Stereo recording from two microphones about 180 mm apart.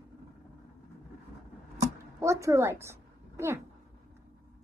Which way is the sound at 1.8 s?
15° right (ahead or behind).